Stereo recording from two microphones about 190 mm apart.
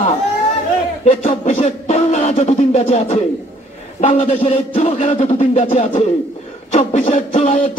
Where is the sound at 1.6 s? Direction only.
40° left (ahead or behind).